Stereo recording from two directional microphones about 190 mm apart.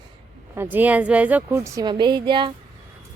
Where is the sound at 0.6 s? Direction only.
10° right (ahead or behind); by 2.5 s 25° right (ahead or behind).